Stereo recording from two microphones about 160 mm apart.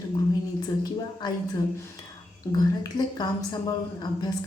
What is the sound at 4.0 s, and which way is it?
Speech, 25° left (ahead or behind).